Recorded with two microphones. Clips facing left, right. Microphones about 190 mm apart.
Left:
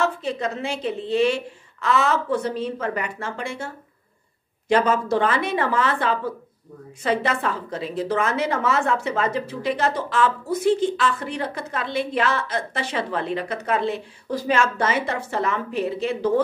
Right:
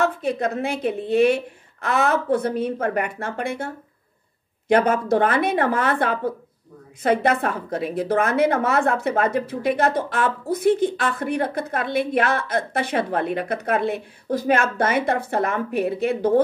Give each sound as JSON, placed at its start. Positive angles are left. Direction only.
{"t": 0.0, "sound": "a woman's voice", "side_deg": -55}